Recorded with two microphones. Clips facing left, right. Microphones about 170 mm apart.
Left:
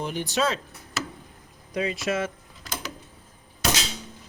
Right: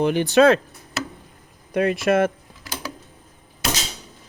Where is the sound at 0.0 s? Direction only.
70° right (ahead or behind).